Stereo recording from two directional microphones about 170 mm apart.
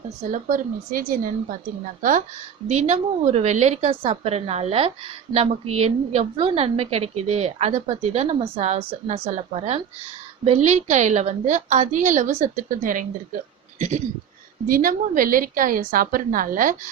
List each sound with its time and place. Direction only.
0.3 s a woman's voice: 50° right (ahead or behind)
14.7 s a woman's voice: 55° right (ahead or behind)